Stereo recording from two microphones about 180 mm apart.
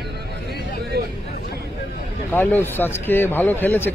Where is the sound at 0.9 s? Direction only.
65° right (ahead or behind).